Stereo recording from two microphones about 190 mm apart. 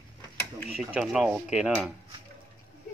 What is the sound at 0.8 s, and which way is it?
Speech, centre (ahead or behind).